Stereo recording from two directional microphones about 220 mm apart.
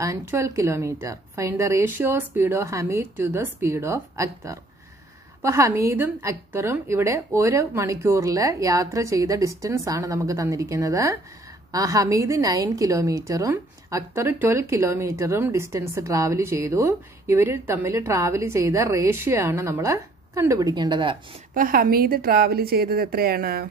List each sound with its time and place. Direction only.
0.0 s a woman's voice: 10° right (ahead or behind)
21.5 s a woman's voice: 40° right (ahead or behind)